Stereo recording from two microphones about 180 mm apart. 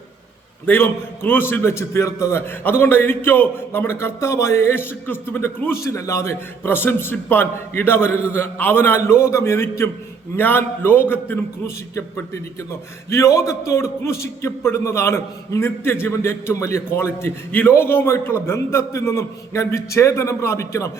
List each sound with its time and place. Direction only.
0.6 s a man's voice: 10° left (ahead or behind)